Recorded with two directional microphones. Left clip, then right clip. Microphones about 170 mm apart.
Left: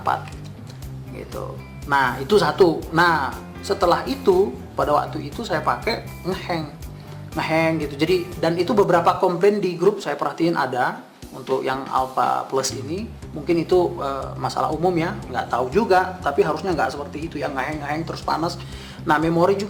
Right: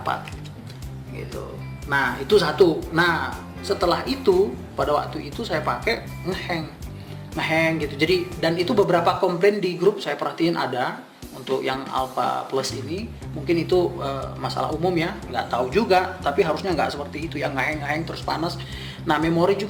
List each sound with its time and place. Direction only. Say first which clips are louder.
1.9 s speech: left 1 dB; 25° left (ahead or behind)
12.1 s speech: left 3 dB; centre (ahead or behind)
12.6 s speech: left 2 dB; 20° left (ahead or behind); by 17.9 s 5° left (ahead or behind)
17.9 s speech: left 2 dB; 15° left (ahead or behind)